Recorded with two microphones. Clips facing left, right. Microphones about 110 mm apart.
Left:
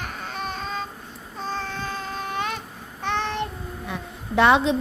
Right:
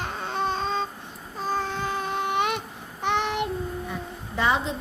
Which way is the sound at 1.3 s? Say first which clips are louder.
Right 3 dB; 10° right (ahead or behind).